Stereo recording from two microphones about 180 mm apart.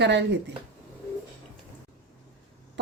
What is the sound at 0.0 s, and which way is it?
Speech, 75° right (ahead or behind).